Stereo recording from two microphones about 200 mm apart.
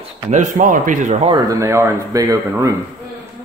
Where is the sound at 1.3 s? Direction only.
15° right (ahead or behind).